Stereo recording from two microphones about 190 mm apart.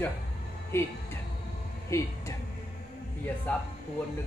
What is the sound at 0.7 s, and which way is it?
A man's voice, 10° left (ahead or behind).